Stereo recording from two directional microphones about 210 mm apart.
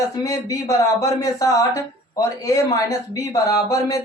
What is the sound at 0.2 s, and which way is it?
Speech, 15° left (ahead or behind).